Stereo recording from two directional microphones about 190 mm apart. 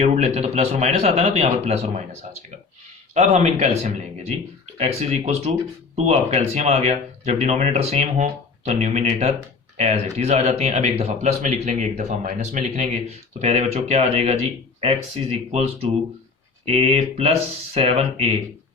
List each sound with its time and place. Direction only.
0.0 s speech: 35° right (ahead or behind)